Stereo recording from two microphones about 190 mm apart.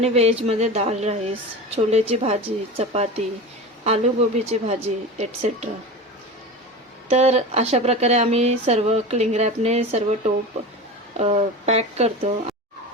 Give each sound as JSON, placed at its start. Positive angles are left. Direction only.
{"t": 0.0, "sound": "a woman's voice", "side_deg": -35}
{"t": 4.4, "sound": "a woman's voice", "side_deg": -35}
{"t": 7.1, "sound": "a woman's voice", "side_deg": -35}
{"t": 11.2, "sound": "a woman's voice", "side_deg": -35}